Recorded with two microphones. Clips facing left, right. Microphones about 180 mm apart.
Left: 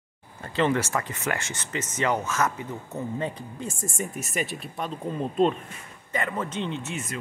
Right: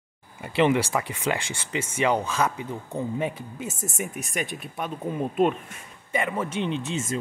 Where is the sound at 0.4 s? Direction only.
10° right (ahead or behind).